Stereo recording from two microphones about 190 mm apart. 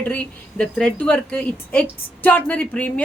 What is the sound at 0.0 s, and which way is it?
A woman's voice, 10° left (ahead or behind).